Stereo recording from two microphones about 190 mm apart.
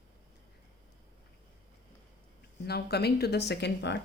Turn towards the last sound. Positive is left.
turn(degrees=65)  # may be behind; listen again after turning